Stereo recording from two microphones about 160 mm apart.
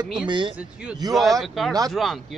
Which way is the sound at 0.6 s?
5° right (ahead or behind).